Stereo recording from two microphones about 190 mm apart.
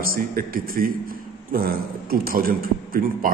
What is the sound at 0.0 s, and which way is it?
A man's voice, 50° right (ahead or behind).